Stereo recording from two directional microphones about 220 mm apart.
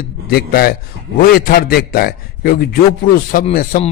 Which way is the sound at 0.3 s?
45° left (ahead or behind).